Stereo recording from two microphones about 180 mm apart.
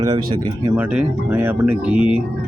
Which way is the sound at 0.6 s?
10° right (ahead or behind).